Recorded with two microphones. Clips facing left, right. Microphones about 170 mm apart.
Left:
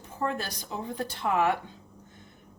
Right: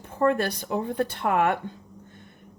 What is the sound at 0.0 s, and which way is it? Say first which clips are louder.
Speech: right 9 dB; 60° right (ahead or behind).